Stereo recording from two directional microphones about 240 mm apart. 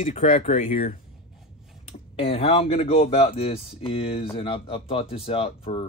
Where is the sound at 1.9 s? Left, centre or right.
Left.